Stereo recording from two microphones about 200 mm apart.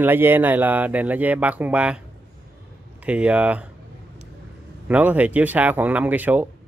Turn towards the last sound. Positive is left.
turn(degrees=-10)  # may be behind; listen again after turning